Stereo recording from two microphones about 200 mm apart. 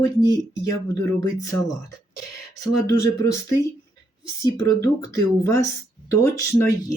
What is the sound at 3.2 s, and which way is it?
Speech, 15° left (ahead or behind).